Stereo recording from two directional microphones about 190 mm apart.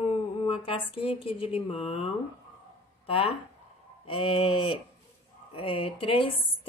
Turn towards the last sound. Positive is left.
turn(degrees=30)  # may be behind; listen again after turning